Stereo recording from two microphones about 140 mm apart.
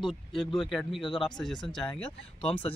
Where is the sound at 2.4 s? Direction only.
40° left (ahead or behind).